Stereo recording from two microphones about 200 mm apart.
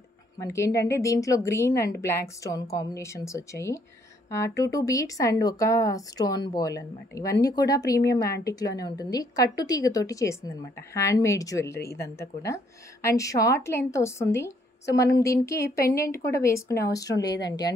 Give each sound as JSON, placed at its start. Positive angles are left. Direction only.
{"t": 0.4, "sound": "a woman's voice", "side_deg": 15}
{"t": 11.8, "sound": "speech", "side_deg": 50}
{"t": 12.2, "sound": "a woman's voice", "side_deg": 15}